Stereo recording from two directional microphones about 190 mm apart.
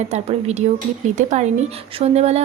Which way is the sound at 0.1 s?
35° right (ahead or behind).